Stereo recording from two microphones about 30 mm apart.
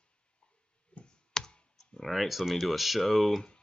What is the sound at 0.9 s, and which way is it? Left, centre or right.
Clicking, left.